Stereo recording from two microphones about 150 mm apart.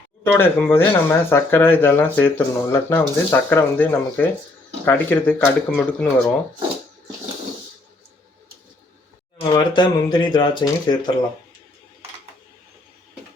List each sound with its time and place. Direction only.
0.3 s speech: 15° left (ahead or behind)
9.4 s speech: 30° left (ahead or behind)